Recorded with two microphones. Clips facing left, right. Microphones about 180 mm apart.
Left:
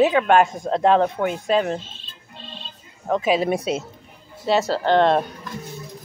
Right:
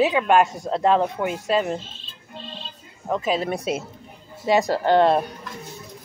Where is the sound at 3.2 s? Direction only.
10° left (ahead or behind).